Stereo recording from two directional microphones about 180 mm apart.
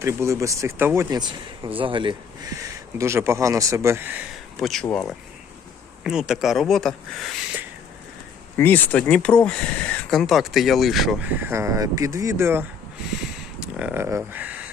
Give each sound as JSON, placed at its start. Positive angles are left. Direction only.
{"t": 0.0, "sound": "a man's voice", "side_deg": -15}
{"t": 1.1, "sound": "speech", "side_deg": -25}
{"t": 3.0, "sound": "a man's voice", "side_deg": -15}
{"t": 8.5, "sound": "speech", "side_deg": 10}